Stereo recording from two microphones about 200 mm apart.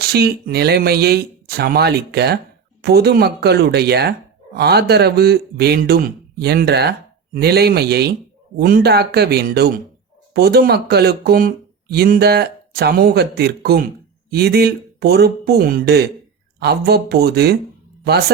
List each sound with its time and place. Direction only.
0.0 s speech: 55° right (ahead or behind)